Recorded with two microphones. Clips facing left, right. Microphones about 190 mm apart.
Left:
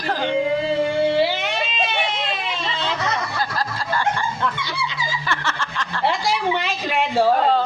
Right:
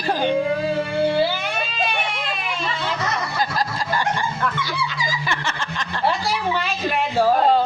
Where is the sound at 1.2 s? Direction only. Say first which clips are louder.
Left 1 dB; 20° left (ahead or behind).